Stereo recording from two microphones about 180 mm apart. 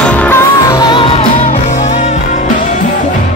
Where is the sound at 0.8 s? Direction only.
25° left (ahead or behind).